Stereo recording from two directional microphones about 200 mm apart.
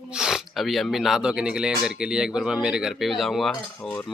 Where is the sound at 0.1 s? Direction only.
5° right (ahead or behind).